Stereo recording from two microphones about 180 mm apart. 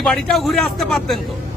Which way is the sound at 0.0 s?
Centre (ahead or behind).